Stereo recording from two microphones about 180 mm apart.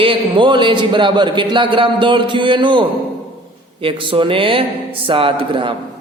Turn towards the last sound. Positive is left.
turn(degrees=-30)  # may be behind; listen again after turning